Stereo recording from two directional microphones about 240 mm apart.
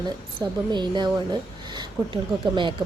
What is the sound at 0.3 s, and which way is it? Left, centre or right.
A woman's voice, centre.